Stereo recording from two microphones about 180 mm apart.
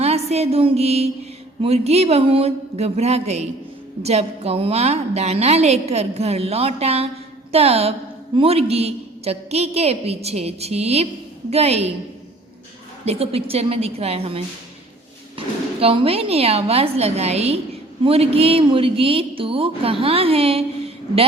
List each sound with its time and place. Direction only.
0.0 s a sound: 35° right (ahead or behind)
1.6 s speech: 35° right (ahead or behind)
13.1 s speech: 35° right (ahead or behind)